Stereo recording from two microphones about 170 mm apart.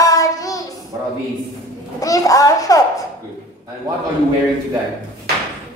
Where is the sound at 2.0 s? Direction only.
20° left (ahead or behind).